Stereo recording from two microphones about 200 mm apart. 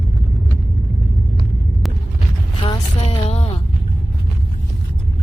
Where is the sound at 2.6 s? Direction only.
25° left (ahead or behind).